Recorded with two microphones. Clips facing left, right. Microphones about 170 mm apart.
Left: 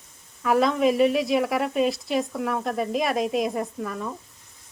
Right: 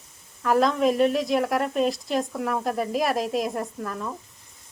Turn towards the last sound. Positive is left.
turn(degrees=0)  # may be behind; listen again after turning